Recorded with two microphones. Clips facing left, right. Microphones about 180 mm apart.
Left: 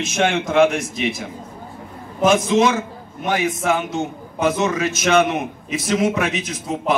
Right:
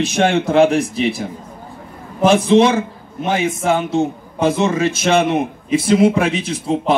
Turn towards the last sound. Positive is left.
turn(degrees=-30)  # may be behind; listen again after turning